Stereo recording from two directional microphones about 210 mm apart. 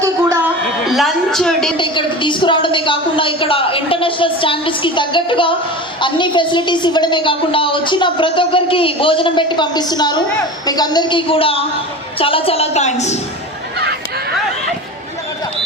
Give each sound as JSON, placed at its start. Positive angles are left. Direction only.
{"t": 0.9, "sound": "a woman's voice", "side_deg": 0}
{"t": 1.7, "sound": "a woman's voice", "side_deg": 25}
{"t": 13.7, "sound": "a sound", "side_deg": -50}